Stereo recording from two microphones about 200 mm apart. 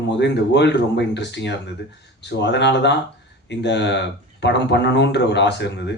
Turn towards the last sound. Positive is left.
turn(degrees=60)  # may be behind; listen again after turning